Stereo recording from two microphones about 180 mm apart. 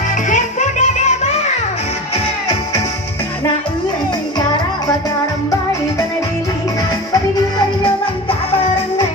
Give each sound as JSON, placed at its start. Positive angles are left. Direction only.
{"t": 0.3, "sound": "music", "side_deg": 45}